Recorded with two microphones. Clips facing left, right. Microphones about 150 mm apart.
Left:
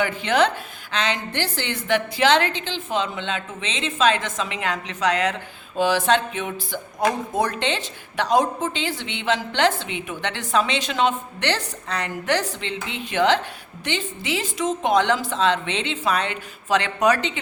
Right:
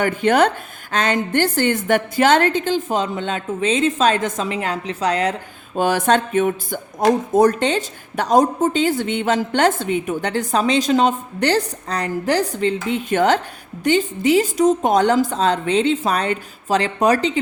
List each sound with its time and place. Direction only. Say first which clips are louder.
0.0 s a woman's voice: right 4 dB; 50° right (ahead or behind)
5.7 s a woman's voice: right 3 dB; 50° right (ahead or behind)